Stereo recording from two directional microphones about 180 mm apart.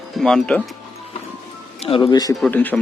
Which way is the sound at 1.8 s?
30° left (ahead or behind).